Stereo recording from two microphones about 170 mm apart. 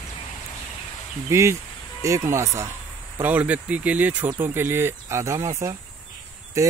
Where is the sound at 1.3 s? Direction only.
15° right (ahead or behind).